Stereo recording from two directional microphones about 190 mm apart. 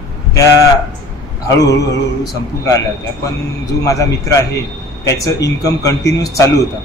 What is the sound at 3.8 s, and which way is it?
A man's voice, 15° left (ahead or behind).